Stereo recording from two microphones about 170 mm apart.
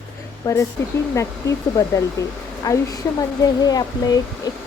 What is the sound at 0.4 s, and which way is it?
Speech, 15° left (ahead or behind).